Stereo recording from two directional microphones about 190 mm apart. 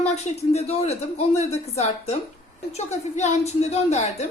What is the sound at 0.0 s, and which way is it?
Speech, 35° left (ahead or behind).